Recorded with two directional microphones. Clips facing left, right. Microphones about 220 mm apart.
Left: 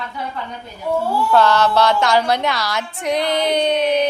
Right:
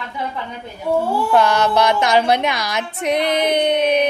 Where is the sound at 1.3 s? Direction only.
15° right (ahead or behind).